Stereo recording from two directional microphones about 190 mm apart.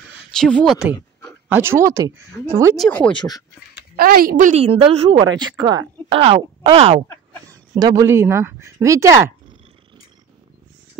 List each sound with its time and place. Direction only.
0.4 s speech: 5° left (ahead or behind)
1.5 s speech: 10° right (ahead or behind)
2.8 s speech: 5° left (ahead or behind)
3.2 s speech: 20° left (ahead or behind)
3.9 s a woman's voice: 50° right (ahead or behind); by 7.1 s 30° right (ahead or behind)
7.7 s speech: 20° right (ahead or behind)